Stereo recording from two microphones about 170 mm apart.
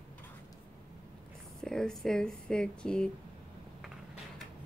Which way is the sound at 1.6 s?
5° left (ahead or behind).